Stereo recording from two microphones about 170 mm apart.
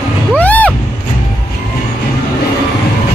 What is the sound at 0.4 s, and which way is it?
Music, 10° left (ahead or behind).